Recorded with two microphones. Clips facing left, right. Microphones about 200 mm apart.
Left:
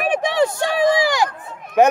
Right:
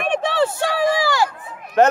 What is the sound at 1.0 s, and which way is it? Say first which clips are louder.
Run: left 1 dB; 15° left (ahead or behind).